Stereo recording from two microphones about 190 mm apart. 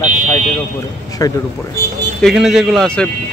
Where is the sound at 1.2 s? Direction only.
20° left (ahead or behind).